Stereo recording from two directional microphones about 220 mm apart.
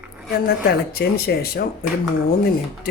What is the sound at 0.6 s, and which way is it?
Speech, 45° left (ahead or behind).